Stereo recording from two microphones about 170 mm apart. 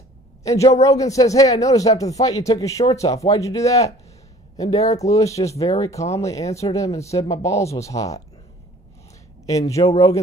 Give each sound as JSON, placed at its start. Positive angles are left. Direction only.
{"t": 0.4, "sound": "a woman's voice", "side_deg": 20}
{"t": 9.9, "sound": "speech", "side_deg": 20}